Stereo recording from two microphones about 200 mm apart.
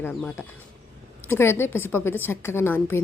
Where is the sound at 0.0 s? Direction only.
10° left (ahead or behind).